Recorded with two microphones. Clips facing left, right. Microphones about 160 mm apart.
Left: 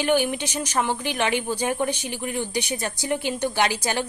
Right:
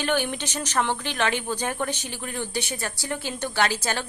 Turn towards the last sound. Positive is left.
turn(degrees=15)  # may be behind; listen again after turning